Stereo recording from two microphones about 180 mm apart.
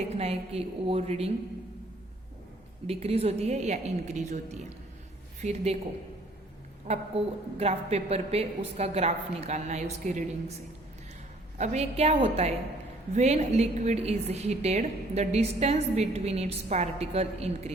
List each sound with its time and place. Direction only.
0.1 s a woman's voice: 35° right (ahead or behind)
2.8 s a woman's voice: 35° right (ahead or behind)
6.9 s a woman's voice: 35° right (ahead or behind)
11.5 s a woman's voice: 40° right (ahead or behind)